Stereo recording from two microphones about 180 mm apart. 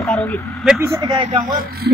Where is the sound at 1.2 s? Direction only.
40° right (ahead or behind).